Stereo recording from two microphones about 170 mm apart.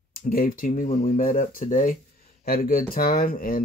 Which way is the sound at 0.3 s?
55° left (ahead or behind).